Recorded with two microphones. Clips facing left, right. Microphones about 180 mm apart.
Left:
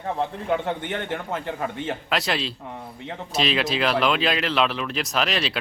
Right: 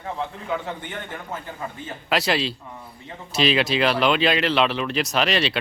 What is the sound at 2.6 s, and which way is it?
Speech, 65° left (ahead or behind).